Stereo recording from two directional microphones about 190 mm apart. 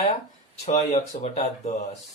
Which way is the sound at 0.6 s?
35° left (ahead or behind).